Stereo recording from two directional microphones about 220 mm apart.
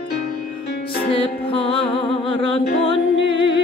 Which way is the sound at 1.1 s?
25° left (ahead or behind).